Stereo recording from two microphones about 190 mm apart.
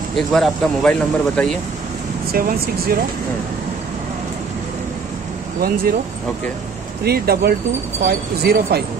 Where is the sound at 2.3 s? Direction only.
50° right (ahead or behind).